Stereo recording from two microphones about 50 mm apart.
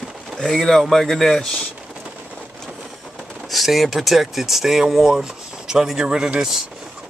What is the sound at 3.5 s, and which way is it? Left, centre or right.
Speech, centre.